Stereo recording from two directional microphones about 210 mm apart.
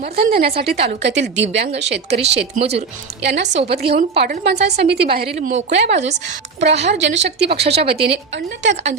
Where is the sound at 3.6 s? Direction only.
50° right (ahead or behind).